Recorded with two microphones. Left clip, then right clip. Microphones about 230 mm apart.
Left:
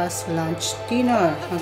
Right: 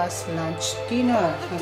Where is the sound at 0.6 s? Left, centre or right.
Centre.